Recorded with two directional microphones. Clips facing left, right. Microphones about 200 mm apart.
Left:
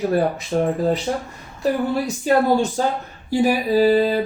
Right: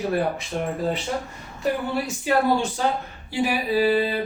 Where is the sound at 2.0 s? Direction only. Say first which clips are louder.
Left 3 dB; 40° left (ahead or behind).